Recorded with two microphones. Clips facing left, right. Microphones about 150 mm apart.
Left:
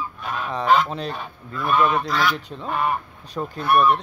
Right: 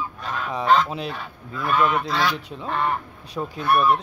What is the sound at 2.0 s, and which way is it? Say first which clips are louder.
Speech: left 1 dB; 25° right (ahead or behind).